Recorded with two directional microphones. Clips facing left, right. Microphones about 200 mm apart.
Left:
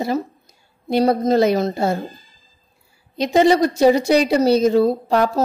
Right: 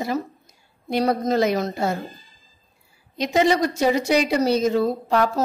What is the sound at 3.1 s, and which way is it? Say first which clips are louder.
A woman's voice: left 5 dB; 35° left (ahead or behind).